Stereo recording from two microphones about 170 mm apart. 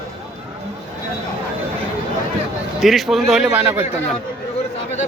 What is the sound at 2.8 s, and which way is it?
A man's voice, centre (ahead or behind).